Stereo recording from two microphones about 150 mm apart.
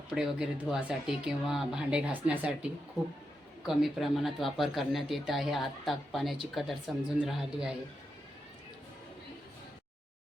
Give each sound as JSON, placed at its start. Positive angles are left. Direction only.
{"t": 0.1, "sound": "speech", "side_deg": -5}
{"t": 3.7, "sound": "speech", "side_deg": 0}